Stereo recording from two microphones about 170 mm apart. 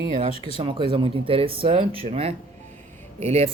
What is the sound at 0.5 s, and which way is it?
Speech, 30° right (ahead or behind).